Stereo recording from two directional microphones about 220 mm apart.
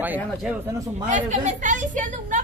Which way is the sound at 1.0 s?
35° right (ahead or behind).